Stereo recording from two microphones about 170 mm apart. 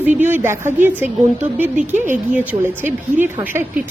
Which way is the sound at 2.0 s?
10° right (ahead or behind).